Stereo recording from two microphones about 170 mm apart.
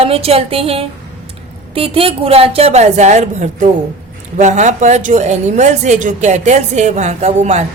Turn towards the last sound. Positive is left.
turn(degrees=-40)  # may be behind; listen again after turning